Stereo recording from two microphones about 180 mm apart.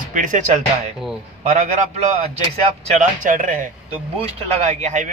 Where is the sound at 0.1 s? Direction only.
45° right (ahead or behind).